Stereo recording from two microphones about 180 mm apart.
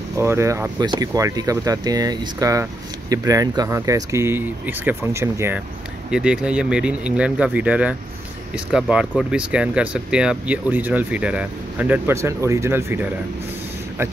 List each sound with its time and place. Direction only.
0.2 s speech: 15° right (ahead or behind)